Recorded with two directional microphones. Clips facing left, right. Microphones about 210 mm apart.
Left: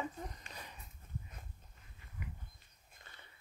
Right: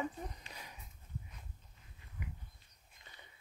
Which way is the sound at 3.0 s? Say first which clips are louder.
Left 1 dB; 50° left (ahead or behind).